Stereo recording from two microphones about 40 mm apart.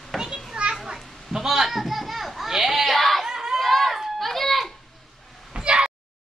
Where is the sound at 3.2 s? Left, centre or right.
Centre.